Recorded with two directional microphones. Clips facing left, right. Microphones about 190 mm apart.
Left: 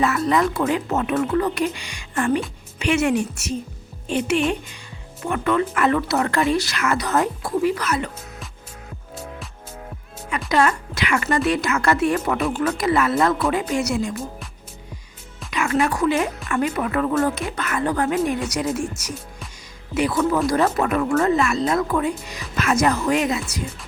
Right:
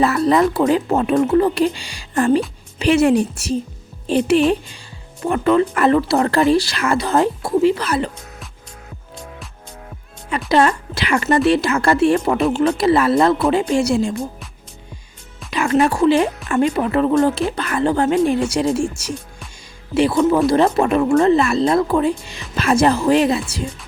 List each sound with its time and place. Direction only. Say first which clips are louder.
0.0 s speech: right 5 dB; 35° right (ahead or behind)
10.5 s speech: right 4 dB; 30° right (ahead or behind)
15.4 s speech: right 5 dB; 30° right (ahead or behind)